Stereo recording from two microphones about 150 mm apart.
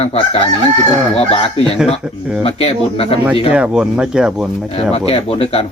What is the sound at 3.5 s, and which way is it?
Speech, 5° right (ahead or behind).